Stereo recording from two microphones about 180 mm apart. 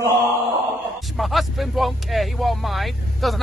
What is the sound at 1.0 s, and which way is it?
Speech, centre (ahead or behind).